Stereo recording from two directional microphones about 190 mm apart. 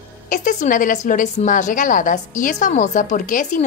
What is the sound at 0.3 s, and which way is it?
A woman's voice, 40° left (ahead or behind).